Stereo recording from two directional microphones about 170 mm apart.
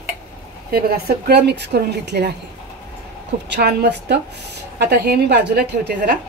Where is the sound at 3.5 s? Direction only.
70° right (ahead or behind).